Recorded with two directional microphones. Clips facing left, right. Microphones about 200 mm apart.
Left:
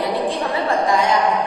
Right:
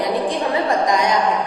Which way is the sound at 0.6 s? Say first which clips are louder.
Left 2 dB; 15° right (ahead or behind).